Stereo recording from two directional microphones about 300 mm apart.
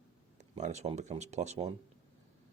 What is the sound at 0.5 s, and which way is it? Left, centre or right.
Speech, right.